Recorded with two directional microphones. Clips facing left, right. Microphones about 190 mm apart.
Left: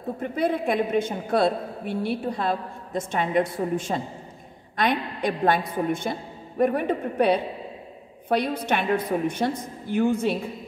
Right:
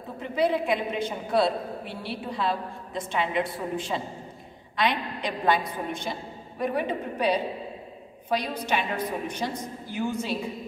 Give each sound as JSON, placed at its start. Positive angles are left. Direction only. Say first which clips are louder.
{"t": 0.2, "sound": "a woman's voice", "louder": "right 1 dB", "side_deg": 50}